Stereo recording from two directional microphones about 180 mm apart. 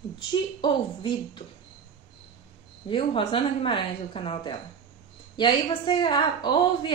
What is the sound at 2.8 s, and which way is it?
A woman's voice, 30° left (ahead or behind).